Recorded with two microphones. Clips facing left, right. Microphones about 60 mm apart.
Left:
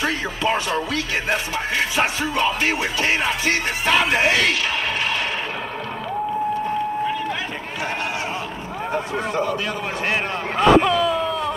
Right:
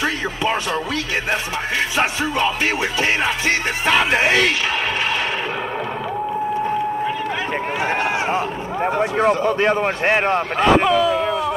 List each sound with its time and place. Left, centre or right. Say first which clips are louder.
0.0 s music: right 1 dB; centre
2.0 s music: right 2 dB; centre
9.1 s speech: right 5 dB; right
10.6 s speech: left 1 dB; centre